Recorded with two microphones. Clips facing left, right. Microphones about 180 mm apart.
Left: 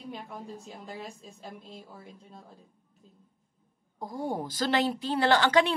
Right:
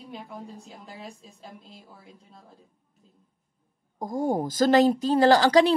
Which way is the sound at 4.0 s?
45° right (ahead or behind).